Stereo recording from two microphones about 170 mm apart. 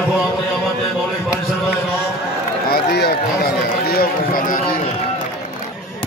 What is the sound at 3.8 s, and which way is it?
Speech, 65° left (ahead or behind).